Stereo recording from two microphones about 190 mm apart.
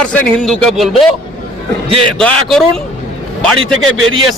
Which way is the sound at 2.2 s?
Centre (ahead or behind).